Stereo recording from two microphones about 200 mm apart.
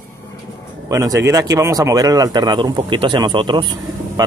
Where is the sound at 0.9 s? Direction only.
15° right (ahead or behind).